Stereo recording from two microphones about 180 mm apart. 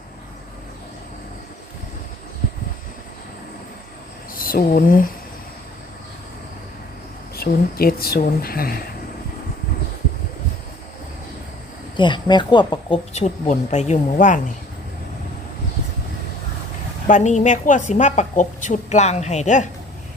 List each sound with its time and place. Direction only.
4.4 s speech: 50° left (ahead or behind)
7.3 s speech: 55° left (ahead or behind)
11.9 s speech: 25° left (ahead or behind)
13.1 s a woman's voice: 40° left (ahead or behind)
17.1 s a woman's voice: 40° left (ahead or behind)